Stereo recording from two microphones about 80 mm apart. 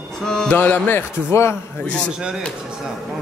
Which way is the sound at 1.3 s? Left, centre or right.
Left.